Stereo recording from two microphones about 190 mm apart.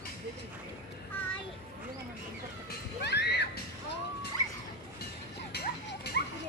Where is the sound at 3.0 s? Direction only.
60° left (ahead or behind).